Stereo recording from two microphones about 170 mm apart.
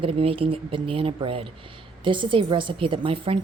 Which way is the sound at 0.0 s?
35° right (ahead or behind).